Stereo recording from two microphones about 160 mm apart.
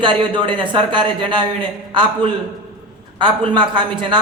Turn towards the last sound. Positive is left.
turn(degrees=-30)  # may be behind; listen again after turning